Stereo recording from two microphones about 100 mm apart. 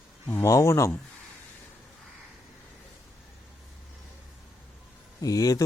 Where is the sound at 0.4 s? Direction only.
30° left (ahead or behind).